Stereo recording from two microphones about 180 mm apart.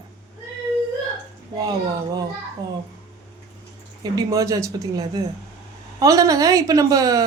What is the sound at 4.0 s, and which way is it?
Speech, 20° right (ahead or behind).